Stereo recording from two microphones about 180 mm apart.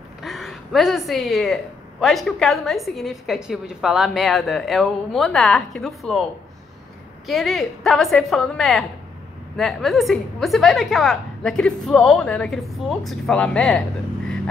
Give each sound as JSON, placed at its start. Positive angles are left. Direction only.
{"t": 0.2, "sound": "a woman's voice", "side_deg": 0}
{"t": 7.2, "sound": "a woman's voice", "side_deg": 0}